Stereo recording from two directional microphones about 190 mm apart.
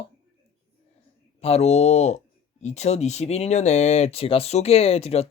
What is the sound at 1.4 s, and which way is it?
Speech, 35° left (ahead or behind).